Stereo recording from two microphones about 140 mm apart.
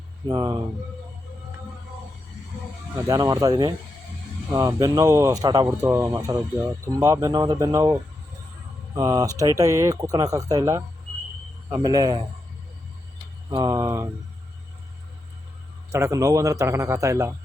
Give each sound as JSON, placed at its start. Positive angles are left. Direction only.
{"t": 0.3, "sound": "speech", "side_deg": -25}
{"t": 3.1, "sound": "speech", "side_deg": -25}
{"t": 5.6, "sound": "speech", "side_deg": -15}
{"t": 9.0, "sound": "speech", "side_deg": -25}
{"t": 13.5, "sound": "speech", "side_deg": -25}
{"t": 15.9, "sound": "speech", "side_deg": -20}